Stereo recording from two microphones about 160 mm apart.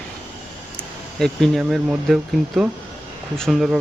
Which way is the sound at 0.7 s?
5° left (ahead or behind).